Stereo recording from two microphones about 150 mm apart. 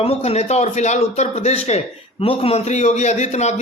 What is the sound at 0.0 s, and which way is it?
A man's voice, 45° left (ahead or behind).